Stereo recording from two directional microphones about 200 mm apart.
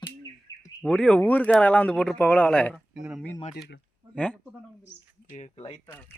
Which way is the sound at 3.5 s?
60° left (ahead or behind).